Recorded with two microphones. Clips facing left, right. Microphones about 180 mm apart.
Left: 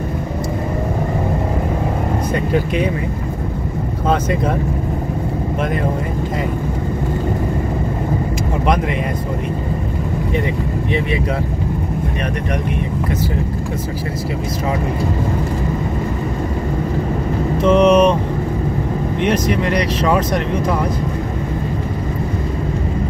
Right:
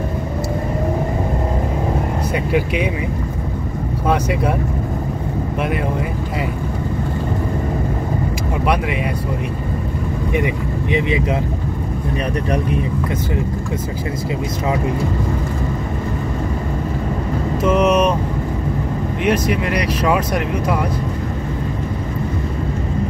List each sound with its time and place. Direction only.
2.3 s speech: 10° right (ahead or behind)
4.1 s speech: 10° right (ahead or behind)
10.9 s speech: 15° right (ahead or behind)
17.6 s speech: 5° right (ahead or behind)
19.2 s speech: 5° right (ahead or behind)